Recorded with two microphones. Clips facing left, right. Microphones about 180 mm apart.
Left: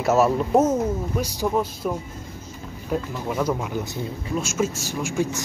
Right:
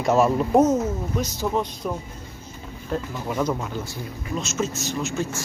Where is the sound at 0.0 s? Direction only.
5° left (ahead or behind).